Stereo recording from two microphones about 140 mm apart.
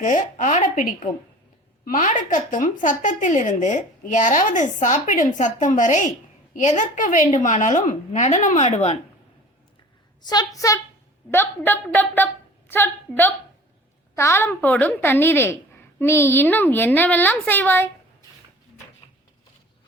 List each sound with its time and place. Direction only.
0.0 s speech: 65° left (ahead or behind)
10.2 s a woman's voice: 25° left (ahead or behind)